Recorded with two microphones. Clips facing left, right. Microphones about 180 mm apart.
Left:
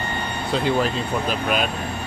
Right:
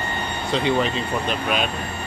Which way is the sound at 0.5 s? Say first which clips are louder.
Even; centre (ahead or behind).